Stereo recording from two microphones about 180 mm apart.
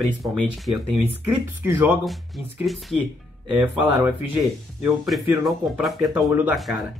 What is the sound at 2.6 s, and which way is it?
Speech, centre (ahead or behind).